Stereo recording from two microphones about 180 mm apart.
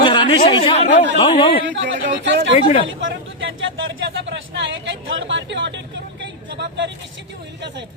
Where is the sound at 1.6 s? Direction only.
90° right.